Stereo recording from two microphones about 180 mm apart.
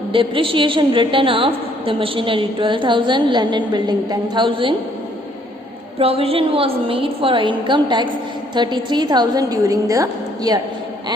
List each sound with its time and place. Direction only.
0.1 s a woman's voice: 30° right (ahead or behind)
6.0 s a woman's voice: 30° right (ahead or behind)